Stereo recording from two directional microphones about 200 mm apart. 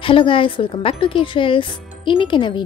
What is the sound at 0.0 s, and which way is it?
Speech, 25° left (ahead or behind).